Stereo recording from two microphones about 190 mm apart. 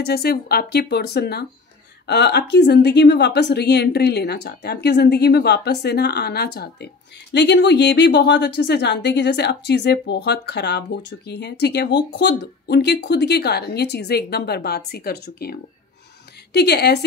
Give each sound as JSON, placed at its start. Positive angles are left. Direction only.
{"t": 0.0, "sound": "speech", "side_deg": 55}
{"t": 16.5, "sound": "speech", "side_deg": 60}